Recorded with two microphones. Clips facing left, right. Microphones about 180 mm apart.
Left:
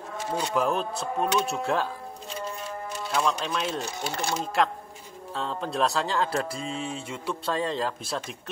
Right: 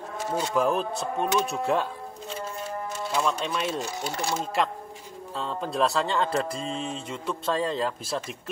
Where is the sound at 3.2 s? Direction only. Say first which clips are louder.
Even; 5° right (ahead or behind).